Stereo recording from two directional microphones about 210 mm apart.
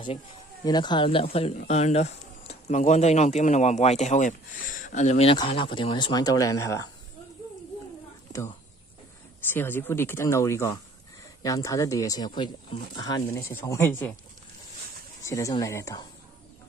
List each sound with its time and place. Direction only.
0.7 s speech: 20° left (ahead or behind)
9.5 s speech: 10° left (ahead or behind)
15.2 s speech: 15° left (ahead or behind)